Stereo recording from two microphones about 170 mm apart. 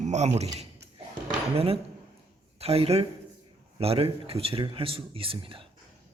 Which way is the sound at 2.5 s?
35° right (ahead or behind).